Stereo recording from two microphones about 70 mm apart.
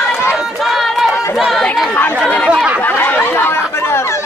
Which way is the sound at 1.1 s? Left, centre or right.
Left.